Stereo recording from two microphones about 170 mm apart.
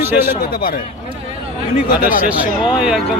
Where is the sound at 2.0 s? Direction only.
50° left (ahead or behind).